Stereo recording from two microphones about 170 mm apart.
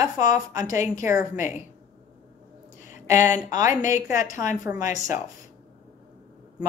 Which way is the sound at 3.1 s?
15° right (ahead or behind).